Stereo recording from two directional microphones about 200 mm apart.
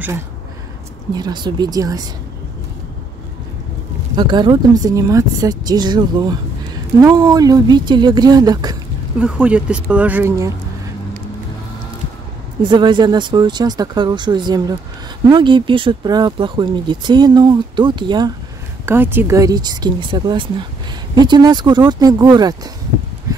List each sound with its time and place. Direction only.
1.1 s speech: 20° right (ahead or behind)
4.1 s speech: 20° right (ahead or behind)
9.2 s speech: 5° right (ahead or behind)
12.6 s speech: 25° right (ahead or behind)
18.9 s speech: 10° right (ahead or behind)
23.3 s a sound: 15° right (ahead or behind)